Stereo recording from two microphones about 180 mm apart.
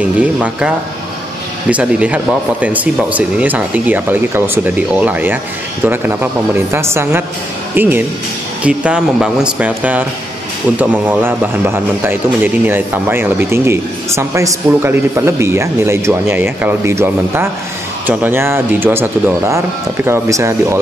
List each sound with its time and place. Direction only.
0.0 s a man's voice: 5° right (ahead or behind)
6.7 s a man's voice: 15° right (ahead or behind)